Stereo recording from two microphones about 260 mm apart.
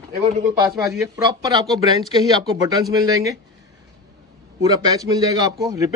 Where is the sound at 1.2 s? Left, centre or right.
Centre.